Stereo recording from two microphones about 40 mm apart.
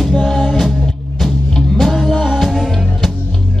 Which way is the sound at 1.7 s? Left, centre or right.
Centre.